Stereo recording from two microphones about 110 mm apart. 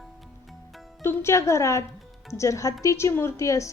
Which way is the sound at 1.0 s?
20° left (ahead or behind).